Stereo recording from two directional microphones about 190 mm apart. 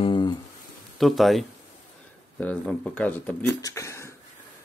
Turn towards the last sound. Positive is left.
turn(degrees=15)  # may be behind; listen again after turning